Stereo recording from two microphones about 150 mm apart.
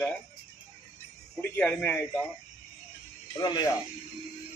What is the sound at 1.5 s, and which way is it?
Speech, 10° left (ahead or behind).